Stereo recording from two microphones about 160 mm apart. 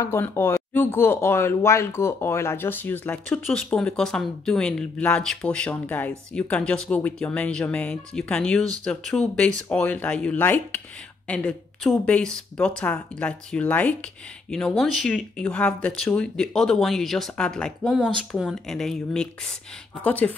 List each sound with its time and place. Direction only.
0.0 s speech: 15° left (ahead or behind)